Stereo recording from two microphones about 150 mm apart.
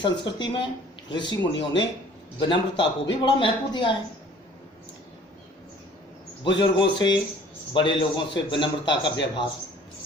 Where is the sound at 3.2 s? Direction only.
35° left (ahead or behind).